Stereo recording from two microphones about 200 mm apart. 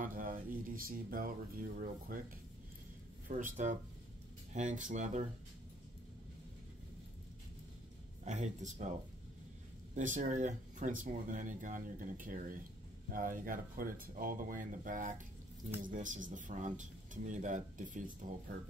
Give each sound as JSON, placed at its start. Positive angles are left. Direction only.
{"t": 0.0, "sound": "speech", "side_deg": -45}
{"t": 3.3, "sound": "speech", "side_deg": -40}
{"t": 8.3, "sound": "speech", "side_deg": -35}
{"t": 9.9, "sound": "speech", "side_deg": -40}